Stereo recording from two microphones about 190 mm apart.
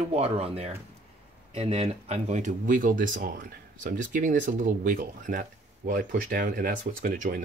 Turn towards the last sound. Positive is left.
turn(degrees=-50)  # may be behind; listen again after turning